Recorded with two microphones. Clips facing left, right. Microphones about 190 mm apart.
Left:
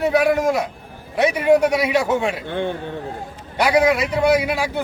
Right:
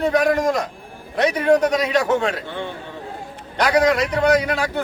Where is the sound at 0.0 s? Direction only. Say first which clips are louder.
Left 1 dB; 10° left (ahead or behind).